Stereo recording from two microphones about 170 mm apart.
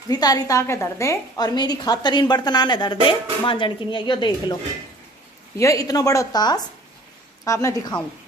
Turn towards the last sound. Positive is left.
turn(degrees=20)  # may be behind; listen again after turning